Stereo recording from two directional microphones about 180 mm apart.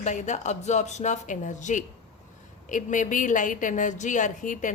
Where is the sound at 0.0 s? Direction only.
40° left (ahead or behind).